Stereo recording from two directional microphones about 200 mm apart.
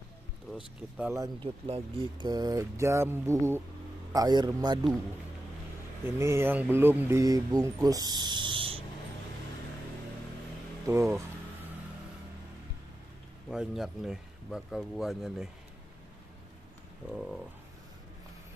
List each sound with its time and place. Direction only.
0.9 s speech: 10° right (ahead or behind)
1.2 s a man's voice: 25° right (ahead or behind)
6.0 s speech: 15° right (ahead or behind)
10.9 s speech: 15° right (ahead or behind)
13.5 s speech: 5° right (ahead or behind)
17.1 s speech: 5° right (ahead or behind)